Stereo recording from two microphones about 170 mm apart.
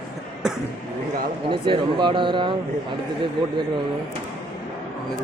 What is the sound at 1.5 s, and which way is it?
Speech, 30° right (ahead or behind).